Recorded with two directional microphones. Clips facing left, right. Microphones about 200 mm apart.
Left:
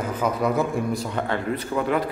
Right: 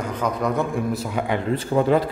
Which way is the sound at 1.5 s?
30° right (ahead or behind).